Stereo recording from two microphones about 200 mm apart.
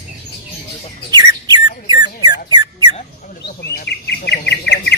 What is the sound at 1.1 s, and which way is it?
Bird, 20° right (ahead or behind).